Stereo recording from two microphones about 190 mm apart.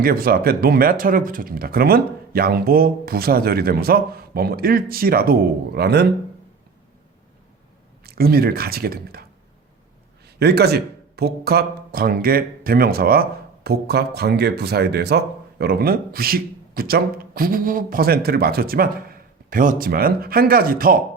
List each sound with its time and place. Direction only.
0.0 s speech: 50° right (ahead or behind)
8.0 s speech: 55° right (ahead or behind)
10.2 s speech: 60° right (ahead or behind)